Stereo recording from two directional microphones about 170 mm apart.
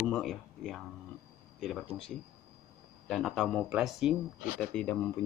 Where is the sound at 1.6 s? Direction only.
Centre (ahead or behind).